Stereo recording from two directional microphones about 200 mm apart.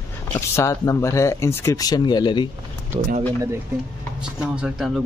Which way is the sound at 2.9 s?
20° right (ahead or behind).